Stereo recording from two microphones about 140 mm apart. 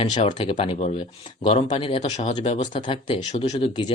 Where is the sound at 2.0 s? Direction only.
55° left (ahead or behind).